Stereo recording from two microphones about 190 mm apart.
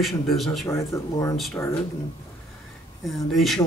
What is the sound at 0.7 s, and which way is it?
A man's voice, 15° left (ahead or behind).